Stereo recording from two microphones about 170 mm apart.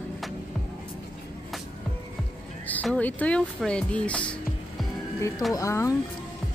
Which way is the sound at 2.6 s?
10° left (ahead or behind).